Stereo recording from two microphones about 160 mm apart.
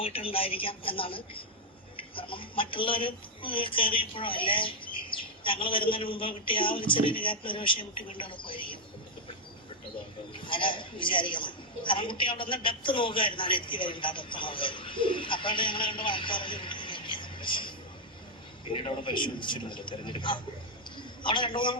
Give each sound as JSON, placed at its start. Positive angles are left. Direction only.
{"t": 0.0, "sound": "a woman's voice", "side_deg": 35}
{"t": 10.3, "sound": "a woman's voice", "side_deg": 30}